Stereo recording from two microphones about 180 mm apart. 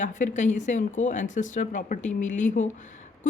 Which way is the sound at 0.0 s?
45° left (ahead or behind).